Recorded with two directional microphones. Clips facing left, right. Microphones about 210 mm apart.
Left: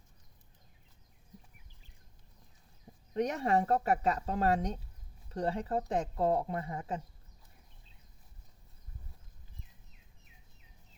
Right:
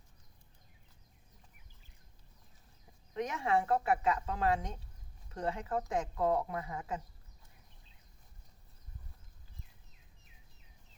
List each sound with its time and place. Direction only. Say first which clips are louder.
3.2 s speech: left 3 dB; 40° left (ahead or behind)